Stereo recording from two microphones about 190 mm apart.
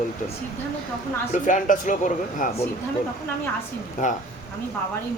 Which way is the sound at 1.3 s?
40° left (ahead or behind).